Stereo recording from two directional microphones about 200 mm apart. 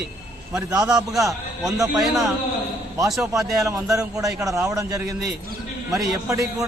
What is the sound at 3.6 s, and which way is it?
A man's voice, 15° right (ahead or behind).